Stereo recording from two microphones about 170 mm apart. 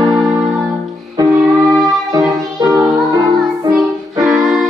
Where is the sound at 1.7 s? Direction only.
Centre (ahead or behind).